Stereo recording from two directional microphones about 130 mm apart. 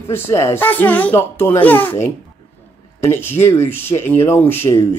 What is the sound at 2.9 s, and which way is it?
Speech, 15° left (ahead or behind).